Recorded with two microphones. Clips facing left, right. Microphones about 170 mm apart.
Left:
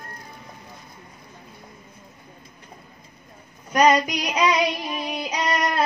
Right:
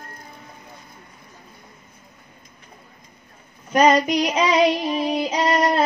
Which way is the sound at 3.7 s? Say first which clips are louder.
Right 2 dB; 30° right (ahead or behind).